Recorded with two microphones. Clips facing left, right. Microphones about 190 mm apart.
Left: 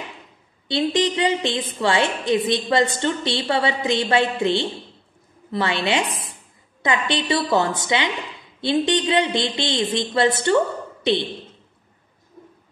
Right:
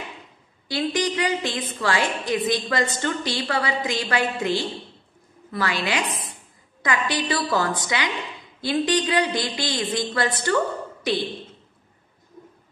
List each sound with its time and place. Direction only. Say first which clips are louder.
0.7 s a woman's voice: left 4 dB; 25° left (ahead or behind)